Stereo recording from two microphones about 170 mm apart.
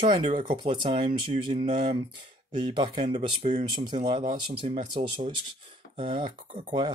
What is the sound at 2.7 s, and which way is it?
Speech, 30° right (ahead or behind).